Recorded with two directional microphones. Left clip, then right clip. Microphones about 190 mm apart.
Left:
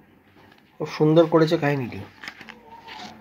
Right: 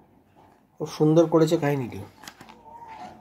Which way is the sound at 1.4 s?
Centre (ahead or behind).